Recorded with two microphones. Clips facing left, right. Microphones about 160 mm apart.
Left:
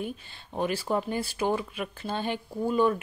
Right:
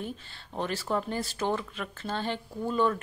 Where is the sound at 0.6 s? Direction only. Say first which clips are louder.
Left 3 dB; 15° left (ahead or behind).